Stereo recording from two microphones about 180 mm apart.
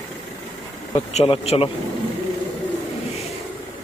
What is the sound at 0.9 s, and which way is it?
Speech, 40° left (ahead or behind).